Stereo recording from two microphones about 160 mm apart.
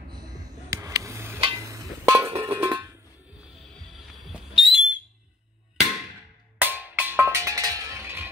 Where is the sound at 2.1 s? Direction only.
20° right (ahead or behind).